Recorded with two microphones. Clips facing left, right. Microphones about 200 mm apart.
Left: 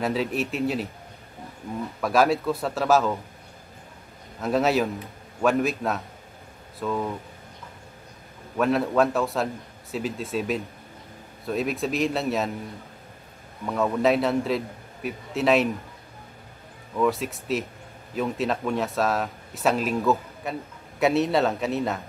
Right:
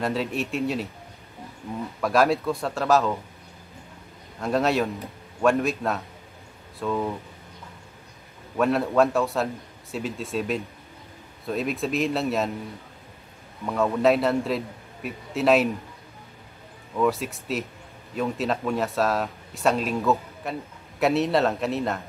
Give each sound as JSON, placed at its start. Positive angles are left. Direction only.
{"t": 0.0, "sound": "speech", "side_deg": 0}
{"t": 2.0, "sound": "speech", "side_deg": 0}
{"t": 4.4, "sound": "speech", "side_deg": 0}
{"t": 8.5, "sound": "speech", "side_deg": 0}
{"t": 13.7, "sound": "speech", "side_deg": 0}
{"t": 17.0, "sound": "speech", "side_deg": 0}